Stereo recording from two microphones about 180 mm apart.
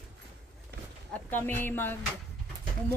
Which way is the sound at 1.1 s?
10° left (ahead or behind).